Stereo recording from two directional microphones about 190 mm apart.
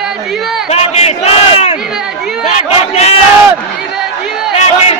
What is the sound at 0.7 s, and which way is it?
Crowd, 35° left (ahead or behind).